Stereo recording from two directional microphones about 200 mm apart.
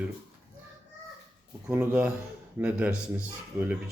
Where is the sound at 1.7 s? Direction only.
5° right (ahead or behind).